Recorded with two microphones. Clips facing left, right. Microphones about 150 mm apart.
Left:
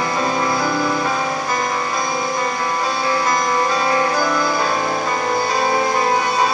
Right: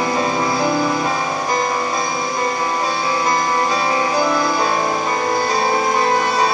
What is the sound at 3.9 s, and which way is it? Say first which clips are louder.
Music: even; 15° right (ahead or behind).